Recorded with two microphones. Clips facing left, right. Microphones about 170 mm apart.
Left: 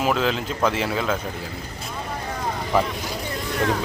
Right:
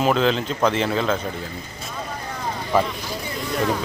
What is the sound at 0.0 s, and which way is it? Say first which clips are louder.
Speech: right 3 dB; 5° left (ahead or behind).